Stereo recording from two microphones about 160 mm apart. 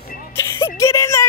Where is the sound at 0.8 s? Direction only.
20° left (ahead or behind).